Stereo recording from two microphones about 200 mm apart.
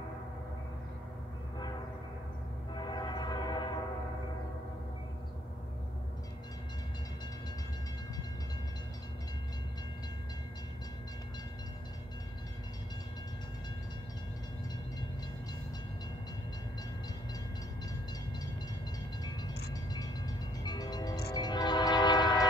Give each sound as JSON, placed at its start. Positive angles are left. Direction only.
{"t": 2.7, "sound": "train", "side_deg": 20}
{"t": 19.7, "sound": "train", "side_deg": 20}
{"t": 20.6, "sound": "music", "side_deg": 20}
{"t": 21.3, "sound": "train", "side_deg": 20}